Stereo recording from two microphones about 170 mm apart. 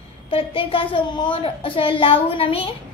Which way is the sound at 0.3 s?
35° left (ahead or behind).